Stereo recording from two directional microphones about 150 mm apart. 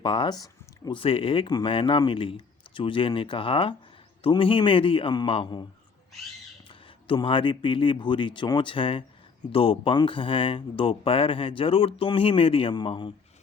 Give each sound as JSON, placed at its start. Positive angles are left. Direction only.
{"t": 0.0, "sound": "speech", "side_deg": 35}
{"t": 0.9, "sound": "speech", "side_deg": 35}
{"t": 6.7, "sound": "speech", "side_deg": 35}